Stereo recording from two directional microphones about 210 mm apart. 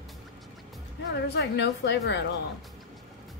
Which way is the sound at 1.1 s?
55° left (ahead or behind).